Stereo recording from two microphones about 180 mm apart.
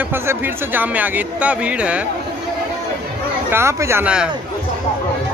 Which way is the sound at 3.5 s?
15° right (ahead or behind).